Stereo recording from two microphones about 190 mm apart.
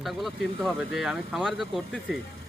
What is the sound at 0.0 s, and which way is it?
Speech, centre (ahead or behind).